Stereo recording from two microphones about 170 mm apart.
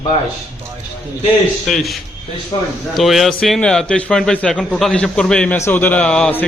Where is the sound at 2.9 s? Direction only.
Centre (ahead or behind).